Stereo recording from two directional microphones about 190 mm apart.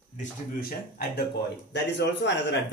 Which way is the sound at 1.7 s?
65° left (ahead or behind).